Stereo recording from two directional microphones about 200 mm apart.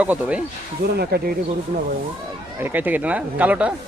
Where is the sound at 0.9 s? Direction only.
50° right (ahead or behind).